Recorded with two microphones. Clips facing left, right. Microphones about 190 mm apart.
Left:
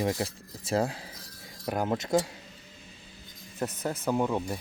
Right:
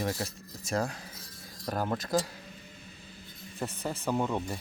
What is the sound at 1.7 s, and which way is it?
Speech, 15° left (ahead or behind).